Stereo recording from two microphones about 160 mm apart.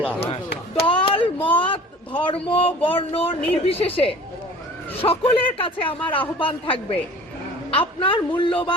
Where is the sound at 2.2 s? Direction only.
35° left (ahead or behind).